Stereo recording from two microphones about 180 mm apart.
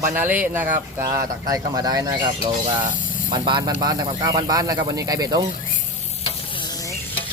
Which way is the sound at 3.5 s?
25° right (ahead or behind).